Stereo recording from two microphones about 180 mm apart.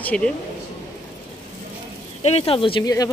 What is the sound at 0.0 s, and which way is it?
Speech, 5° left (ahead or behind).